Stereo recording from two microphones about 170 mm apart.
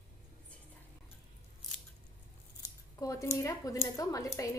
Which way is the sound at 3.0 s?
20° left (ahead or behind).